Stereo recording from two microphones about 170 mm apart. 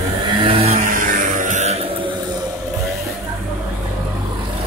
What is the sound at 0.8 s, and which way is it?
Music, 50° right (ahead or behind).